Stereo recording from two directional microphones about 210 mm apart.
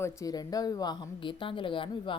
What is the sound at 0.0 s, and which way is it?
A woman's voice, 15° left (ahead or behind).